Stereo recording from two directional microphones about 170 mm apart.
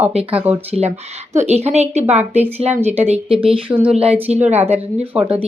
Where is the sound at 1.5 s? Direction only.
40° right (ahead or behind).